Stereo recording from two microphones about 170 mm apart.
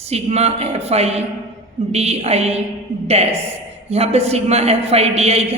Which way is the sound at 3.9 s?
40° right (ahead or behind).